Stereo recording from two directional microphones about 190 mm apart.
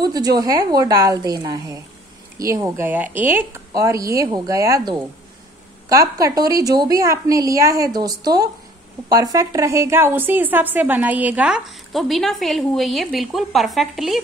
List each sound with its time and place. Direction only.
0.0 s a woman's voice: 20° right (ahead or behind); by 14.2 s centre (ahead or behind)